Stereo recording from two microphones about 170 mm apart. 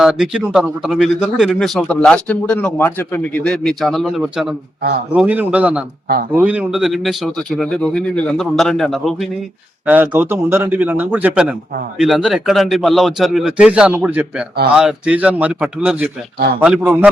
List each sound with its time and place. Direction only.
0.0 s speech: 5° right (ahead or behind)
4.8 s speech: 70° right (ahead or behind)
5.1 s a man's voice: 10° right (ahead or behind)
9.8 s a man's voice: 10° right (ahead or behind)